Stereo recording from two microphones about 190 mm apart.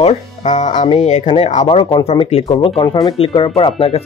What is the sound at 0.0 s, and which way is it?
Speech, 35° left (ahead or behind).